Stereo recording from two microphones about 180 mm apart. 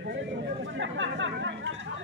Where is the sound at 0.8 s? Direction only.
90° right.